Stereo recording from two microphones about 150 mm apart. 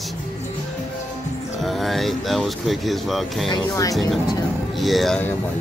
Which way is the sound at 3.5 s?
25° left (ahead or behind).